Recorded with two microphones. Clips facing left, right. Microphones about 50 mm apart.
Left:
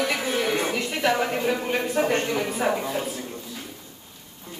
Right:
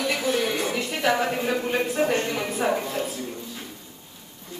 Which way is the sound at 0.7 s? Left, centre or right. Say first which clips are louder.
Even; centre.